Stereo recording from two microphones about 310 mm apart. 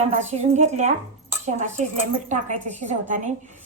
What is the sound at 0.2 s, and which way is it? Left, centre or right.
A woman's voice, right.